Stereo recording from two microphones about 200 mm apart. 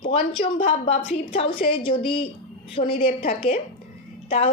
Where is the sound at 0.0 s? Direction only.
25° left (ahead or behind).